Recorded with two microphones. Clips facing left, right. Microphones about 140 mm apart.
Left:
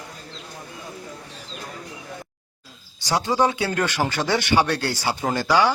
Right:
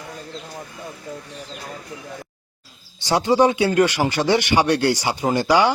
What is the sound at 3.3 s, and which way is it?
Speech, 20° right (ahead or behind).